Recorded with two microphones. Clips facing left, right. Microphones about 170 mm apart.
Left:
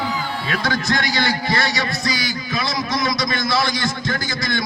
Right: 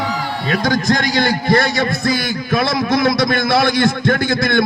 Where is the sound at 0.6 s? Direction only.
45° right (ahead or behind).